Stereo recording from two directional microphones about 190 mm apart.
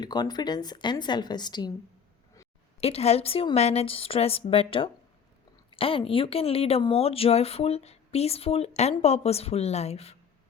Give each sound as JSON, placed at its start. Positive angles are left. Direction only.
{"t": 0.0, "sound": "a woman's voice", "side_deg": 20}
{"t": 2.8, "sound": "speech", "side_deg": 35}